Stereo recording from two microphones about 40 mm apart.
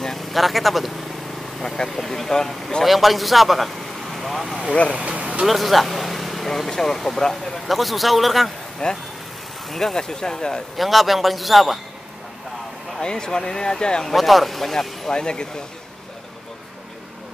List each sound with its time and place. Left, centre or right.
0.0 s speech: centre
2.8 s speech: centre
4.9 s speech: right
5.5 s speech: centre
7.6 s speech: centre
8.8 s speech: left
9.7 s speech: centre
10.8 s speech: centre
13.0 s speech: centre
14.0 s speech: centre
15.1 s speech: left